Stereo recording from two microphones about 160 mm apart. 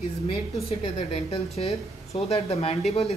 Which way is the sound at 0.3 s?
35° left (ahead or behind).